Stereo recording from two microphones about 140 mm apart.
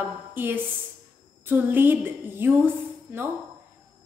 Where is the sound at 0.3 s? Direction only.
15° right (ahead or behind).